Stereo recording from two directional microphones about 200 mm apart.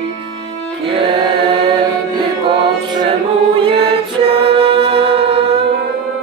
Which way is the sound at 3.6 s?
30° right (ahead or behind).